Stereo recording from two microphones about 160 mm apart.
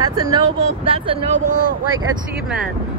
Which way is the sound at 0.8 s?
35° right (ahead or behind).